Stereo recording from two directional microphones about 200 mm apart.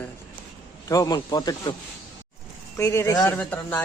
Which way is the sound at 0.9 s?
15° left (ahead or behind).